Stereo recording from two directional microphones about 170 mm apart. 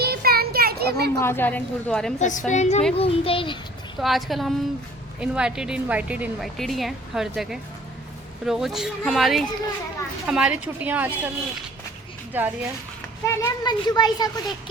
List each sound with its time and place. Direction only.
0.0 s children playing: 65° right (ahead or behind)
1.2 s speech: 15° left (ahead or behind)
2.1 s a woman's voice: 45° left (ahead or behind); by 3.6 s 30° left (ahead or behind)
4.0 s a woman's voice: centre (ahead or behind)
12.3 s a woman's voice: 10° right (ahead or behind)
13.2 s a child's voice: 15° left (ahead or behind)